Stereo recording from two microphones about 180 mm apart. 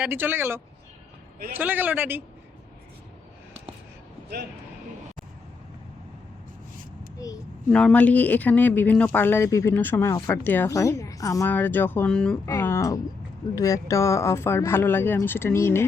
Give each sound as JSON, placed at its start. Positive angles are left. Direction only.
{"t": 0.0, "sound": "a man's voice", "side_deg": -10}
{"t": 7.2, "sound": "a child's voice", "side_deg": 20}
{"t": 7.7, "sound": "speech", "side_deg": 5}